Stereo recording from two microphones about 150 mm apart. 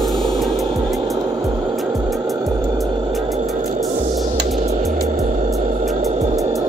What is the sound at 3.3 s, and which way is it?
Hum, 50° right (ahead or behind).